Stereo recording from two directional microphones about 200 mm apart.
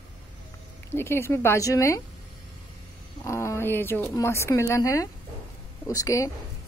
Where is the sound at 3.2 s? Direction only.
15° left (ahead or behind).